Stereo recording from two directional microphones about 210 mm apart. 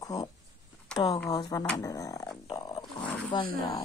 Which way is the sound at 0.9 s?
5° left (ahead or behind).